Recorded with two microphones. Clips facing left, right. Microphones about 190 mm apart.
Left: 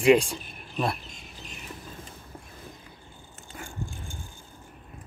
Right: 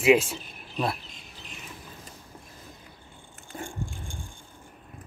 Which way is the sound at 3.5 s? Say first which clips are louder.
Right 5 dB; 30° right (ahead or behind).